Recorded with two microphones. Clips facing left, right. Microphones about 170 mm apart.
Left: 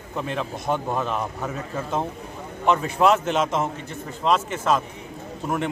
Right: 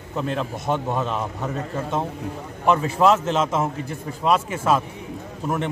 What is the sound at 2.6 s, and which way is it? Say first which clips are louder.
A man's voice: right 1 dB; centre (ahead or behind).